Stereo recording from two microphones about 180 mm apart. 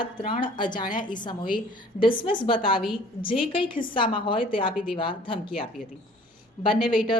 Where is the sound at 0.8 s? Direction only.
50° left (ahead or behind).